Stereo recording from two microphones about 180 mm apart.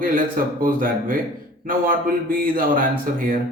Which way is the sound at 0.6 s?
50° right (ahead or behind).